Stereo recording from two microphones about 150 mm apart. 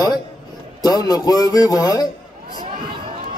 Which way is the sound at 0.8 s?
25° left (ahead or behind).